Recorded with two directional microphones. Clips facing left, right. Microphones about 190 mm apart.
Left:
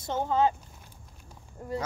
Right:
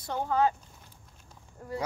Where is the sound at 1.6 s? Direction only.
20° left (ahead or behind).